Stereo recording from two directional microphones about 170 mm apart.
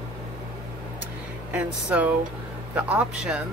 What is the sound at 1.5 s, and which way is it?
A man's voice, 5° right (ahead or behind).